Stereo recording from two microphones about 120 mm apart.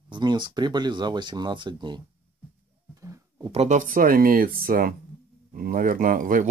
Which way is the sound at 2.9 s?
25° right (ahead or behind).